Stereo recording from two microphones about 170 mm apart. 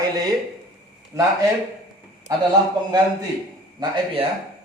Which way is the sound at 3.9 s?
35° right (ahead or behind).